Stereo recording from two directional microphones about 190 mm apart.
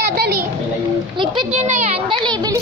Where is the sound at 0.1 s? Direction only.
55° right (ahead or behind).